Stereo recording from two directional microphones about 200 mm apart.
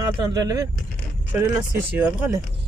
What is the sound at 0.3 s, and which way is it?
Speech, 20° right (ahead or behind).